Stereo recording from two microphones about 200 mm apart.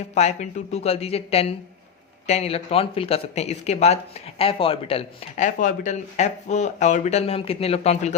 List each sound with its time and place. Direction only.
0.1 s speech: 35° left (ahead or behind)